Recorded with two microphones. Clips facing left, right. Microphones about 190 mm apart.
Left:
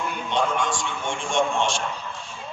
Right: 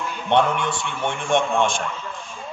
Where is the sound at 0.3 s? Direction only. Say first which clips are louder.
Right 5 dB; 65° right (ahead or behind).